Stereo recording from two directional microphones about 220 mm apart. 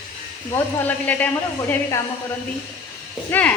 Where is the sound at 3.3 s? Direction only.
5° left (ahead or behind).